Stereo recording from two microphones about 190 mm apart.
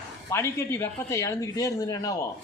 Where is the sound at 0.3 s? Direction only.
15° left (ahead or behind).